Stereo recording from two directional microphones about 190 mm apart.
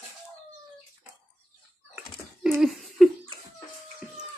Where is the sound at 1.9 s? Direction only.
Centre (ahead or behind).